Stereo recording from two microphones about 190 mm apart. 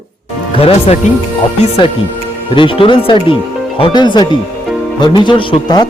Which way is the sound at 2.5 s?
25° left (ahead or behind).